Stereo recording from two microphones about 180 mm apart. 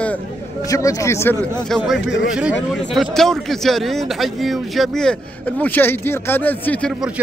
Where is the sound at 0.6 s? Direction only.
20° left (ahead or behind).